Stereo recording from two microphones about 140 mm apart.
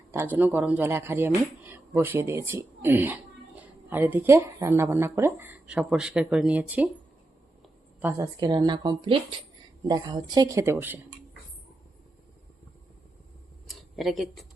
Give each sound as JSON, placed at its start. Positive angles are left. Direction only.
{"t": 0.1, "sound": "speech", "side_deg": -15}
{"t": 8.4, "sound": "speech", "side_deg": -30}
{"t": 13.7, "sound": "a sound", "side_deg": 0}